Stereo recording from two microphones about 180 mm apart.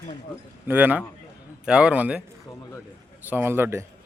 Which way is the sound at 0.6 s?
10° right (ahead or behind).